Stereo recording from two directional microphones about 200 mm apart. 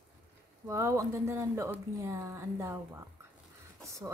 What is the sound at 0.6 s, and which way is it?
Speech, 15° right (ahead or behind).